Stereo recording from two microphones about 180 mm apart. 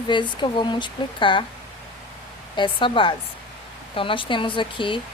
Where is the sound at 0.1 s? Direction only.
25° left (ahead or behind).